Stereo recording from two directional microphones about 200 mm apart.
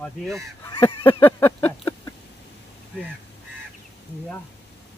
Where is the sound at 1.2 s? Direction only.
10° left (ahead or behind).